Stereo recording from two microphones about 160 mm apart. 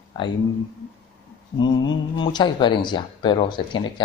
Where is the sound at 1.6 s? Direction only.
30° left (ahead or behind).